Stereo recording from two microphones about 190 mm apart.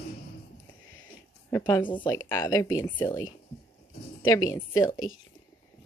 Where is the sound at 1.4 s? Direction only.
15° left (ahead or behind).